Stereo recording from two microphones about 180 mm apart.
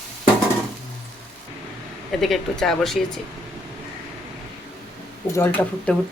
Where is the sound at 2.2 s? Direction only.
Centre (ahead or behind).